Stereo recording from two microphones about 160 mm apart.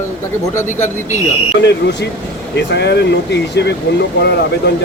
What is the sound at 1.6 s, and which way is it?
Speech, 90° left.